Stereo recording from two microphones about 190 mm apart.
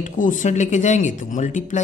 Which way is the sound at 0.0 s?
40° left (ahead or behind).